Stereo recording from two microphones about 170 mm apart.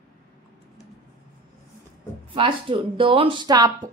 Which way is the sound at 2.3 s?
30° right (ahead or behind).